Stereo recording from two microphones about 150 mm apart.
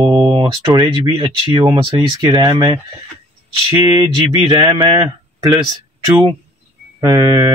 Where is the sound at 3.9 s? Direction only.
30° right (ahead or behind).